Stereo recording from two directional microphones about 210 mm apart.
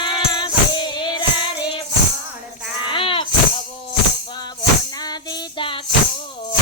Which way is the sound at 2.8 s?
25° left (ahead or behind).